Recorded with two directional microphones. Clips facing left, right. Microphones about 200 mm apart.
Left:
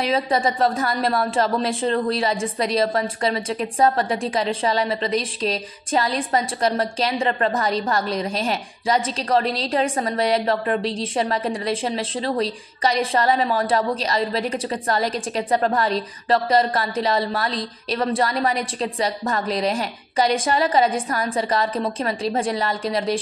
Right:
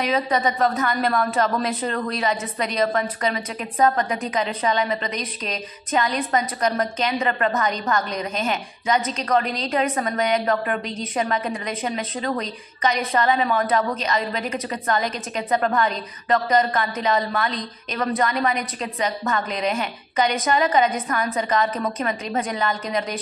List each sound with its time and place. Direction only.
0.0 s a woman's voice: 30° left (ahead or behind)